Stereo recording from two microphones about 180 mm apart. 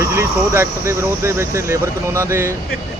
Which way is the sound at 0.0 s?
15° right (ahead or behind).